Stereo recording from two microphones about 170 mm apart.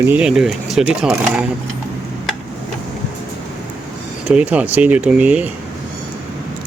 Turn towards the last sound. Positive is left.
turn(degrees=-10)  # may be behind; listen again after turning